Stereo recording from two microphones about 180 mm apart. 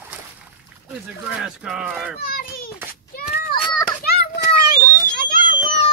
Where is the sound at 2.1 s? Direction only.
55° left (ahead or behind).